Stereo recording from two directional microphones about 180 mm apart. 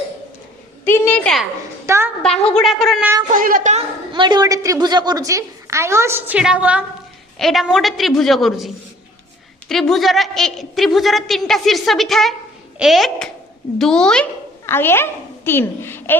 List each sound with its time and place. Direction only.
0.9 s a woman's voice: 10° left (ahead or behind)
1.9 s a woman's voice: 15° right (ahead or behind)
2.6 s a woman's voice: centre (ahead or behind)
3.3 s a woman's voice: 50° right (ahead or behind)
4.1 s a woman's voice: 25° right (ahead or behind); by 16.1 s 10° left (ahead or behind)